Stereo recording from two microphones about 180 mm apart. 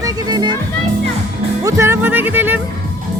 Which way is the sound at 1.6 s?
15° right (ahead or behind).